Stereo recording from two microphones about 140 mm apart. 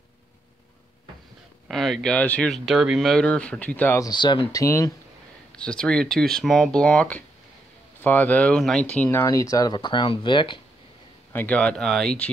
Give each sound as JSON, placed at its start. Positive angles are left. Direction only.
{"t": 1.7, "sound": "speech", "side_deg": 0}
{"t": 4.0, "sound": "speech", "side_deg": 30}
{"t": 5.5, "sound": "speech", "side_deg": 5}
{"t": 11.3, "sound": "speech", "side_deg": 10}